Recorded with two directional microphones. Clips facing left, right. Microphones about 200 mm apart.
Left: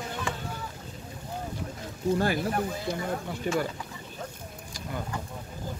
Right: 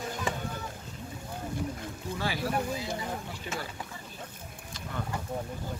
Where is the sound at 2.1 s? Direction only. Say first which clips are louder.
Left 4 dB; 50° left (ahead or behind).